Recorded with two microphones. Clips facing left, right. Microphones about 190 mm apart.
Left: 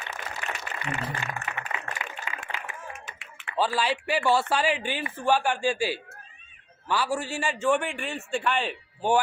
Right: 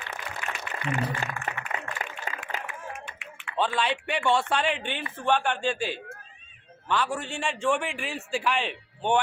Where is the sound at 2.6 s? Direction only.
40° left (ahead or behind).